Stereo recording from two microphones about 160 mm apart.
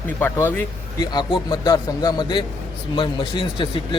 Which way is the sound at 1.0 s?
25° left (ahead or behind).